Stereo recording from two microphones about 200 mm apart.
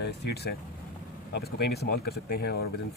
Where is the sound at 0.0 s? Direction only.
55° left (ahead or behind).